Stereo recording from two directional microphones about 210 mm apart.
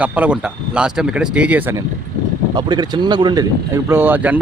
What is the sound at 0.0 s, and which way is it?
Speech, 5° right (ahead or behind).